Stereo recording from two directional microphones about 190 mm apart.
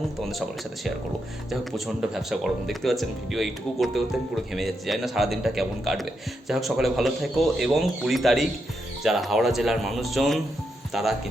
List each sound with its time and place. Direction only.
1.5 s speech: centre (ahead or behind)